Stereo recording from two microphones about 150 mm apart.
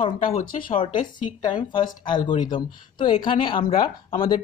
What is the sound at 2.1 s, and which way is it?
Speech, 30° left (ahead or behind).